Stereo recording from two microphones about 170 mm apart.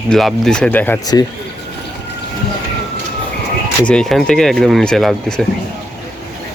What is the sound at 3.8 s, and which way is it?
Speech, 5° left (ahead or behind).